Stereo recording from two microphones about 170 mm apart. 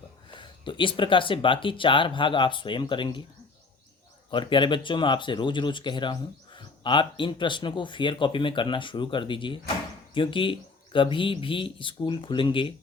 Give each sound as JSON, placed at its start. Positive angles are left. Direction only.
{"t": 0.3, "sound": "speech", "side_deg": 30}
{"t": 4.3, "sound": "speech", "side_deg": 30}